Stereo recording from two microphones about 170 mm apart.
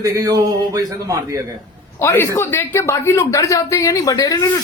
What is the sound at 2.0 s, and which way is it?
Speech, 15° left (ahead or behind).